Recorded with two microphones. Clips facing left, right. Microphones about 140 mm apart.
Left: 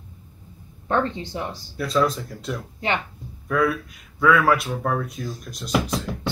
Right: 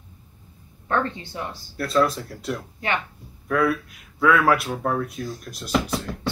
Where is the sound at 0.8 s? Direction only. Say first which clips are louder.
Left 2 dB; 20° left (ahead or behind).